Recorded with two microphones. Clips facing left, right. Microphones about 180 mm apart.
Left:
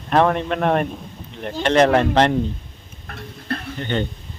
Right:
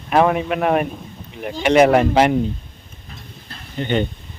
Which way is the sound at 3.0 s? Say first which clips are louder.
Left 10 dB; 65° left (ahead or behind).